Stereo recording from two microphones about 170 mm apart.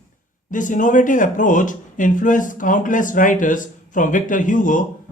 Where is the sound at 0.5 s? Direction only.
50° left (ahead or behind).